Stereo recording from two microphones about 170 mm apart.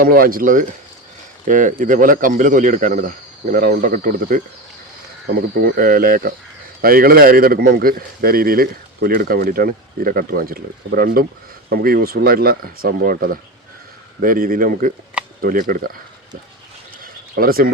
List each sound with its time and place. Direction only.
0.0 s speech: 60° right (ahead or behind)
5.5 s speech: 60° right (ahead or behind)
17.0 s a sound: 60° right (ahead or behind)